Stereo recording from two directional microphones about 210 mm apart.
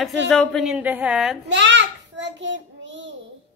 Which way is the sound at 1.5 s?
55° right (ahead or behind).